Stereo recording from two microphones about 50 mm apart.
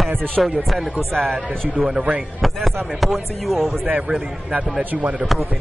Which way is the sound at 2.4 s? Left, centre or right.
Centre.